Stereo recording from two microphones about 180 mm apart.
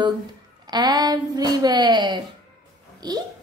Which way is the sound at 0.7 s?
25° right (ahead or behind).